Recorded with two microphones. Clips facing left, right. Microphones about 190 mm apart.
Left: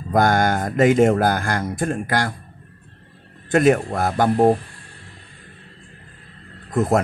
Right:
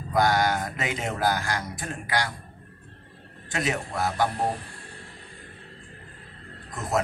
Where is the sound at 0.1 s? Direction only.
50° left (ahead or behind).